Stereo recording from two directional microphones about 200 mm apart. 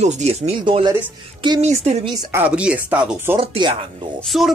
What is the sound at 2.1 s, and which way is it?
Speech, 20° right (ahead or behind).